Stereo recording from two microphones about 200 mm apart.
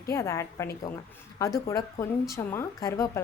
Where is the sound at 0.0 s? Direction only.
15° left (ahead or behind).